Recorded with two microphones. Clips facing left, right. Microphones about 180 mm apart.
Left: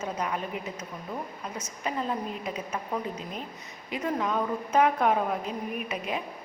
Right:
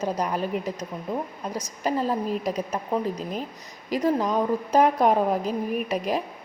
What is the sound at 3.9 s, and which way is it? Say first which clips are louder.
A woman's voice: right 6 dB; 35° right (ahead or behind).